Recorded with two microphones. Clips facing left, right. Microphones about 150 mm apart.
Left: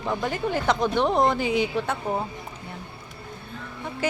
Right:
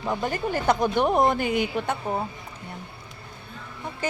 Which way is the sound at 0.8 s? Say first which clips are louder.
Even; 15° right (ahead or behind).